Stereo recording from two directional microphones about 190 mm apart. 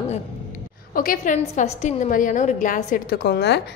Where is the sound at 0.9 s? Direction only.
45° left (ahead or behind).